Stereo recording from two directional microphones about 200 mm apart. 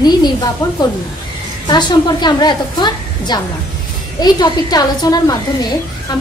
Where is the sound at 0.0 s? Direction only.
20° left (ahead or behind).